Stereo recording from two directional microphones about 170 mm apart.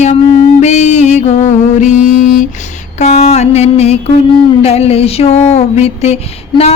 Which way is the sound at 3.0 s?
40° left (ahead or behind).